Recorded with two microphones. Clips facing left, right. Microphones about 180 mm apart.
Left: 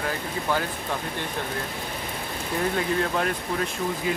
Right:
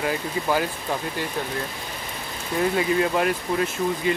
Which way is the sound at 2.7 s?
10° right (ahead or behind).